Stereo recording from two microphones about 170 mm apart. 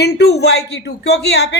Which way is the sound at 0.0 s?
75° left (ahead or behind).